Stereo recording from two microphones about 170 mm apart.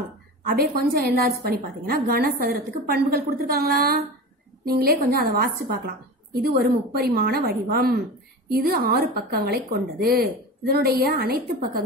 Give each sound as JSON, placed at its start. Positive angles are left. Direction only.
{"t": 0.5, "sound": "a woman's voice", "side_deg": -60}